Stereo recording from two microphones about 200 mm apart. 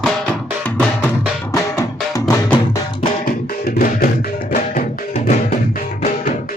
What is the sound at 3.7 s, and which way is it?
Music, 40° left (ahead or behind).